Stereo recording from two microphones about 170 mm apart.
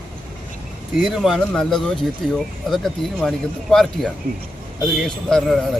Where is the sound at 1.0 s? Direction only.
Centre (ahead or behind).